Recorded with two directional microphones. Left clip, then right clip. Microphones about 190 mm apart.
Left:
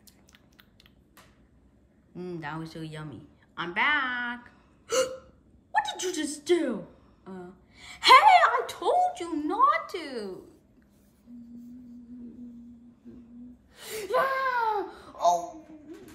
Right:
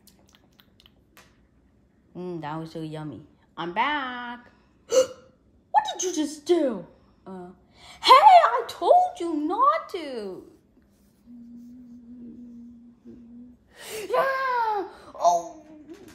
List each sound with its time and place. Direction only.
2.1 s a woman's voice: 25° right (ahead or behind)
5.7 s a woman's voice: 25° right (ahead or behind)
13.7 s a sound: 35° right (ahead or behind)